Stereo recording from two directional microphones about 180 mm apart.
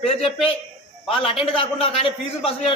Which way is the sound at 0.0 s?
35° left (ahead or behind).